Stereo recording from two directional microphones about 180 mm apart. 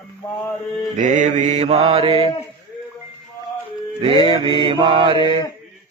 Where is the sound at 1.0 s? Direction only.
45° right (ahead or behind).